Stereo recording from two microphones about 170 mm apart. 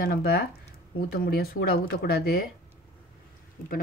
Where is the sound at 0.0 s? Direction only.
65° left (ahead or behind).